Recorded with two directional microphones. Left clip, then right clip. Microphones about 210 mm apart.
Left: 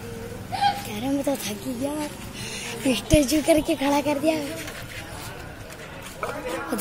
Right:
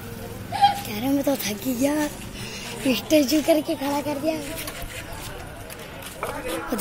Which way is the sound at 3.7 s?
15° left (ahead or behind).